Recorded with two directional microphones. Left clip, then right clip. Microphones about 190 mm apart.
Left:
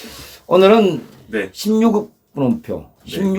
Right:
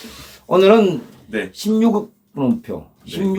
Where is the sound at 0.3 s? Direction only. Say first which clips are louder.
Left 1 dB; 15° left (ahead or behind).